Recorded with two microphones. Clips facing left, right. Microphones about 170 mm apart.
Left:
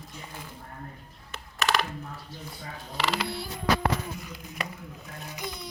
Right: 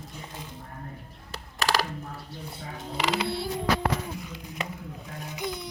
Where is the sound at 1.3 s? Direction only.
35° right (ahead or behind).